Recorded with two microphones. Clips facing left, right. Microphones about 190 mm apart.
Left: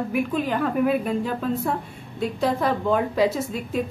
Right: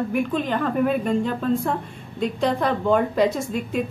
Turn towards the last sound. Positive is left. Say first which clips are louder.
# right 1 dB
turn(degrees=0)  # may be behind; listen again after turning